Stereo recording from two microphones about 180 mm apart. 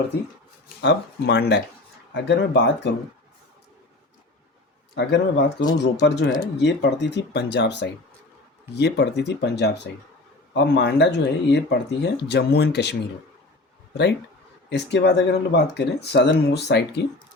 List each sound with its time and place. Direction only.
0.8 s speech: 70° left (ahead or behind)
4.9 s speech: 75° left (ahead or behind)